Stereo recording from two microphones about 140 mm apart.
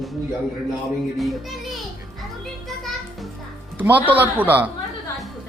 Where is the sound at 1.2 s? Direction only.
Centre (ahead or behind).